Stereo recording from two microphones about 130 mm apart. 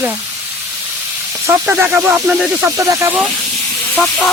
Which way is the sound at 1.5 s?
10° right (ahead or behind).